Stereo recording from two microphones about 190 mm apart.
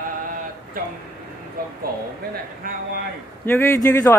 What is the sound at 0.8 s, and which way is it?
Speech, 50° right (ahead or behind).